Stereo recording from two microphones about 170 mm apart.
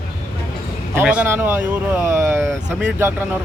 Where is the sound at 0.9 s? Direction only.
10° right (ahead or behind).